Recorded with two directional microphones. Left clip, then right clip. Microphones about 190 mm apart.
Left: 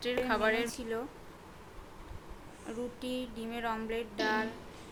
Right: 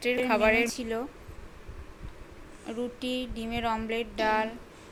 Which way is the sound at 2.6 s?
15° right (ahead or behind).